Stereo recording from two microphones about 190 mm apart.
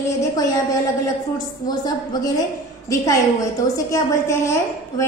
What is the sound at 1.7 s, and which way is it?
Speech, 20° left (ahead or behind).